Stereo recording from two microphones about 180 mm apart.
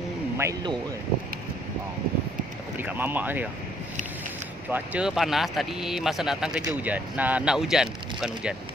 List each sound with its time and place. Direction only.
0.4 s speech: 20° right (ahead or behind)
2.8 s speech: 10° right (ahead or behind)
4.6 s speech: 10° right (ahead or behind)